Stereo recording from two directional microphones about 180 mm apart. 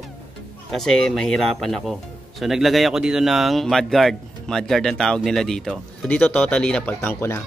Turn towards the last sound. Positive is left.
turn(degrees=10)  # may be behind; listen again after turning